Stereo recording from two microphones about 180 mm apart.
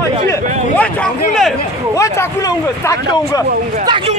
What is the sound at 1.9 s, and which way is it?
Speech, 15° left (ahead or behind).